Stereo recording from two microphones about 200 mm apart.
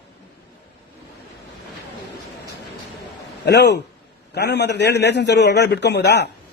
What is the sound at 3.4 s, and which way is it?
A man's voice, 60° left (ahead or behind).